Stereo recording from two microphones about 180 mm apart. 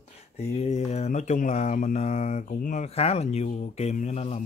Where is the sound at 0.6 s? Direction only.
40° left (ahead or behind).